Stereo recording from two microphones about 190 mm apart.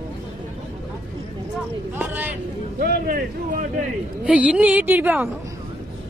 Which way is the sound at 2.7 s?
55° right (ahead or behind).